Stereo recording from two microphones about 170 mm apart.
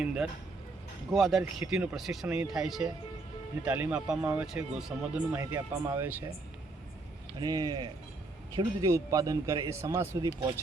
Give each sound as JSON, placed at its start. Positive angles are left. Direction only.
{"t": 0.0, "sound": "speech", "side_deg": -5}
{"t": 7.3, "sound": "a man's voice", "side_deg": -25}